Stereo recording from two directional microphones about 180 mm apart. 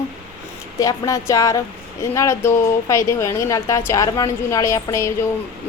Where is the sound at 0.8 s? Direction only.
15° left (ahead or behind).